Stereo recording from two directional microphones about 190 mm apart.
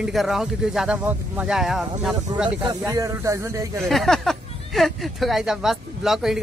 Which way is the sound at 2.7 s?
15° right (ahead or behind).